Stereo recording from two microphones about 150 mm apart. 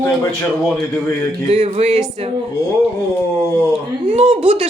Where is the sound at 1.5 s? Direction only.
45° right (ahead or behind).